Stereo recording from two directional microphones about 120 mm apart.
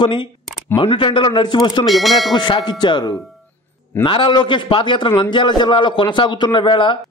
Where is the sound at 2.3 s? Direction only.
40° left (ahead or behind).